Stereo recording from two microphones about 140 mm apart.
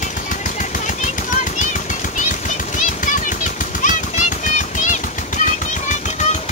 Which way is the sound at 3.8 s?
60° left (ahead or behind).